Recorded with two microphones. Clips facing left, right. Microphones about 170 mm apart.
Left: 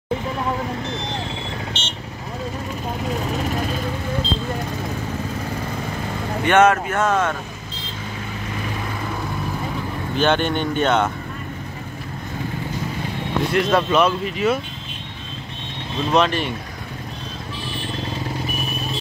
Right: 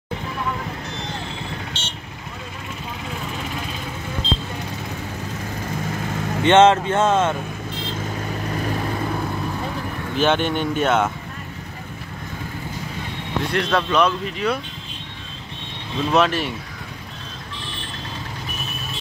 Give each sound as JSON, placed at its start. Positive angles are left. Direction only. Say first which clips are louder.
{"t": 1.7, "sound": "vehicle", "louder": "left 3 dB", "side_deg": 20}
{"t": 6.4, "sound": "speech", "louder": "right 2 dB", "side_deg": -25}
{"t": 10.1, "sound": "speech", "louder": "even", "side_deg": 0}
{"t": 13.5, "sound": "speech", "louder": "left 3 dB", "side_deg": 5}
{"t": 16.1, "sound": "speech", "louder": "even", "side_deg": -5}